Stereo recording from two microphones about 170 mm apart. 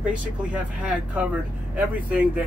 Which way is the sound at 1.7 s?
10° right (ahead or behind).